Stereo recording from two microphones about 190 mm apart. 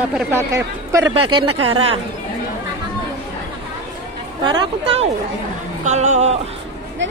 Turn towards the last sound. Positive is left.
turn(degrees=-35)  # may be behind; listen again after turning